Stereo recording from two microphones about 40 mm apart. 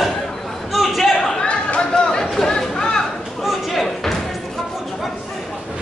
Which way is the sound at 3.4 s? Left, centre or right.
Centre.